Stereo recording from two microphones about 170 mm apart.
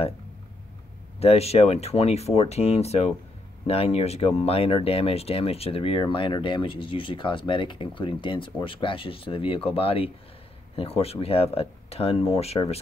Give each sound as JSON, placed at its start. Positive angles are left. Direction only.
{"t": 1.2, "sound": "speech", "side_deg": 35}